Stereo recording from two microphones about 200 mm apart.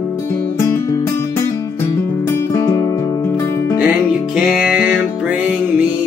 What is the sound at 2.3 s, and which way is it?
Music, 15° left (ahead or behind).